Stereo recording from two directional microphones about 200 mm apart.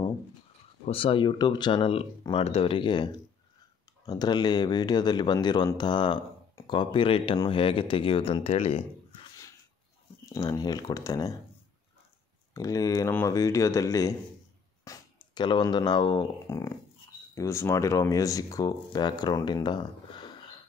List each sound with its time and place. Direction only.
0.8 s speech: 25° left (ahead or behind)
10.3 s speech: 20° left (ahead or behind)
12.5 s speech: 15° left (ahead or behind)